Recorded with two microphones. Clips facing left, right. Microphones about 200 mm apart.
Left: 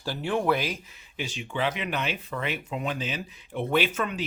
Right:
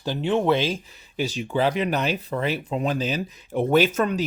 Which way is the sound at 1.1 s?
40° right (ahead or behind).